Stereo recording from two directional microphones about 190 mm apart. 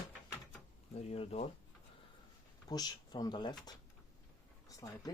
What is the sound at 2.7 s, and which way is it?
Speech, 20° left (ahead or behind).